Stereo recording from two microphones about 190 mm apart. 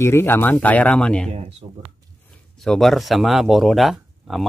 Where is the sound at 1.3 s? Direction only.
30° right (ahead or behind).